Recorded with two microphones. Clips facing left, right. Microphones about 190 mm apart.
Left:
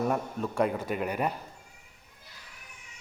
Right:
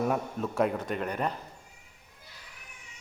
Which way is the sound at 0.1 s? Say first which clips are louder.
Even; centre (ahead or behind).